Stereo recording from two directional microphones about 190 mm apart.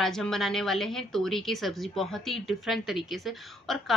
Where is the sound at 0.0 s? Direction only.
Centre (ahead or behind).